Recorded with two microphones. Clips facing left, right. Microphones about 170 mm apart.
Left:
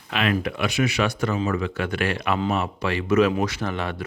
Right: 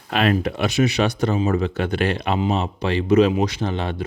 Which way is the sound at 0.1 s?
40° right (ahead or behind).